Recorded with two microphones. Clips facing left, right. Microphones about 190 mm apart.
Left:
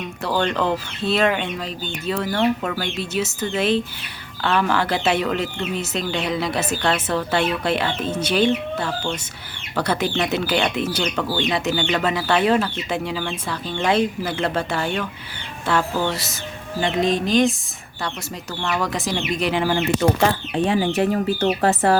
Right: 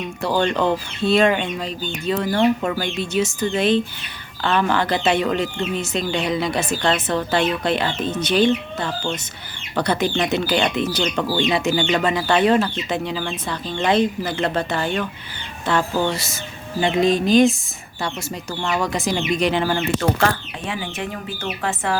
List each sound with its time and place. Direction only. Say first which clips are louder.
0.2 s speech: right 2 dB; centre (ahead or behind)
2.3 s speech: right 3 dB; 10° right (ahead or behind)
18.8 s speech: right 3 dB; centre (ahead or behind)
20.7 s speech: left 8 dB; 40° left (ahead or behind)